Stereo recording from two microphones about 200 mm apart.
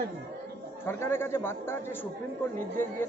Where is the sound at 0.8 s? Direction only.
10° left (ahead or behind).